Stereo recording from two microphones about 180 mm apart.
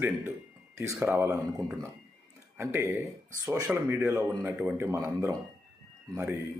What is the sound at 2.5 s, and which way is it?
Speech, 15° right (ahead or behind).